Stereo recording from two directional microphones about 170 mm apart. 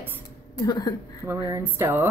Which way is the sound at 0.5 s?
20° left (ahead or behind).